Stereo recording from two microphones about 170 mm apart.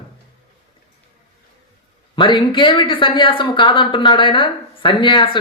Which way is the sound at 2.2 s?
30° left (ahead or behind).